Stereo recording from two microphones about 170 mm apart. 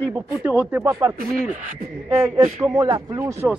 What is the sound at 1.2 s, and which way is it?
Speech, 55° right (ahead or behind).